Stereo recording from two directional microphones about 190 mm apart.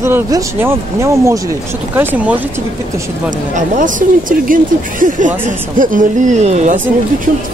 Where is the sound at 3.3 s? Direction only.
40° right (ahead or behind).